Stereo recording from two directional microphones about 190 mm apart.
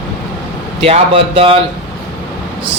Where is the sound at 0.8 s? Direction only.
30° right (ahead or behind).